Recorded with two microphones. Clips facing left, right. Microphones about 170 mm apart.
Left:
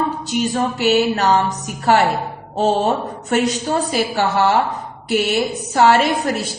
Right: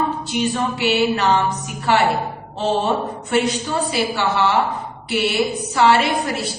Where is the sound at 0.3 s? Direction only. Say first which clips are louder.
Left 2 dB; 45° left (ahead or behind).